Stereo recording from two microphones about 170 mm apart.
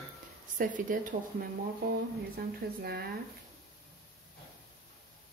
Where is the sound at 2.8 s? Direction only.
65° right (ahead or behind).